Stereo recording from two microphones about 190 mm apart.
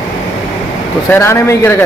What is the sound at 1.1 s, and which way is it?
Speech, 15° left (ahead or behind).